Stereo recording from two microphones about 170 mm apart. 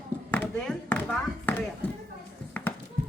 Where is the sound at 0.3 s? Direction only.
5° left (ahead or behind).